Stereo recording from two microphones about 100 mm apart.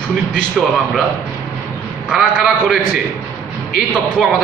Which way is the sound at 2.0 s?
5° right (ahead or behind).